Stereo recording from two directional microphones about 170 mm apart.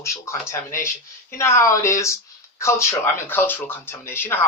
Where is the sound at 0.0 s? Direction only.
15° left (ahead or behind).